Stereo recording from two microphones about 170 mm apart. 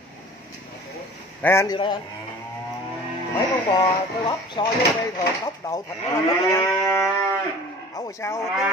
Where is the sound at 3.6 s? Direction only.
30° left (ahead or behind).